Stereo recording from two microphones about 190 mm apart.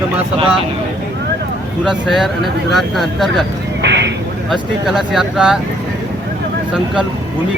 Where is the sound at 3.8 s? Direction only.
65° right (ahead or behind).